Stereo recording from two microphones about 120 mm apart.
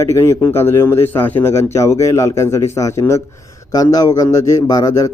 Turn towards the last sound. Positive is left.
turn(degrees=30)  # may be behind; listen again after turning